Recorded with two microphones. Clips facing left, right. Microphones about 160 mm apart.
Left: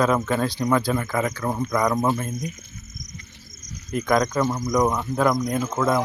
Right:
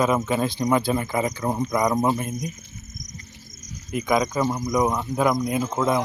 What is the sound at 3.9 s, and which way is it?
Speech, 5° right (ahead or behind).